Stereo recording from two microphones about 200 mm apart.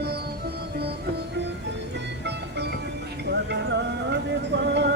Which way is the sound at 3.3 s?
60° right (ahead or behind).